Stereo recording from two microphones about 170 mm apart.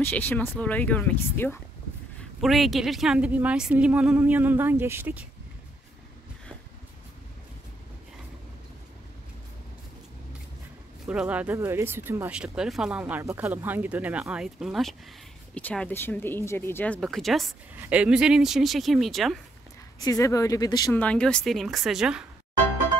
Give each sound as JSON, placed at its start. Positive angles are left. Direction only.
{"t": 0.0, "sound": "speech", "side_deg": 10}
{"t": 2.4, "sound": "speech", "side_deg": 0}
{"t": 11.1, "sound": "speech", "side_deg": -10}
{"t": 20.0, "sound": "speech", "side_deg": 20}
{"t": 21.0, "sound": "speech", "side_deg": 5}